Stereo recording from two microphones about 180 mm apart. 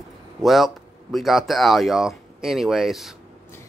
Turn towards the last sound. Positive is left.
turn(degrees=0)  # may be behind; listen again after turning